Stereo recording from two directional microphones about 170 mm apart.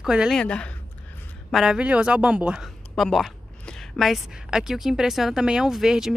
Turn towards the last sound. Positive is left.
turn(degrees=-5)  # may be behind; listen again after turning